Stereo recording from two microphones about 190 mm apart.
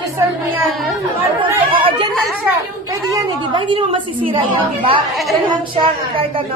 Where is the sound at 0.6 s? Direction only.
Centre (ahead or behind).